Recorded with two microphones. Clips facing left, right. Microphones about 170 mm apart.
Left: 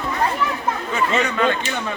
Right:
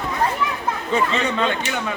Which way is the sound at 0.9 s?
25° right (ahead or behind).